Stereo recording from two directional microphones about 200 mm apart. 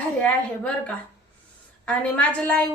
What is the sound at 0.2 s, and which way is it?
Speech, 5° left (ahead or behind).